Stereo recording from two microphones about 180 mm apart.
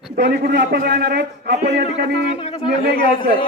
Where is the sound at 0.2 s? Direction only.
65° right (ahead or behind).